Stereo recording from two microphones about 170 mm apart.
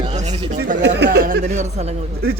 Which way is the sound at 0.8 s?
85° right.